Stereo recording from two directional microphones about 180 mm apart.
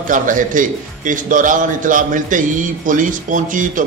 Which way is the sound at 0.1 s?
45° right (ahead or behind).